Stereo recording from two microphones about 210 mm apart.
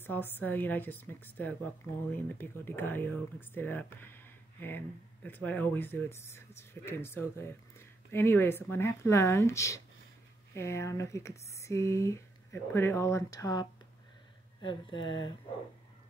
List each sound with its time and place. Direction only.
0.0 s speech: 10° left (ahead or behind)